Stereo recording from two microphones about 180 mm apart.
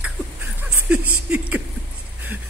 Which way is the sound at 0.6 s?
5° right (ahead or behind).